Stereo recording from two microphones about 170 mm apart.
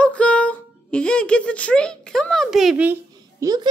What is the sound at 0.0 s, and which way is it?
Speech, 5° left (ahead or behind).